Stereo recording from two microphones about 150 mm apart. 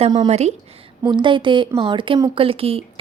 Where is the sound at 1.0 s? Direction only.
30° right (ahead or behind).